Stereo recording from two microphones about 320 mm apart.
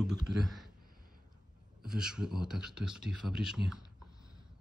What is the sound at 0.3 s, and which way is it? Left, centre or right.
Speech, right.